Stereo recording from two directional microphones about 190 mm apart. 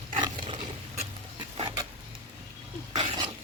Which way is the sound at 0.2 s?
25° right (ahead or behind).